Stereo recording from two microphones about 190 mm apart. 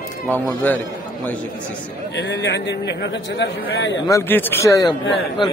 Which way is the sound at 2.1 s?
65° left (ahead or behind).